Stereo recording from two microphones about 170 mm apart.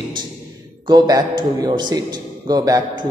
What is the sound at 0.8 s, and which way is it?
A man's voice, 25° right (ahead or behind).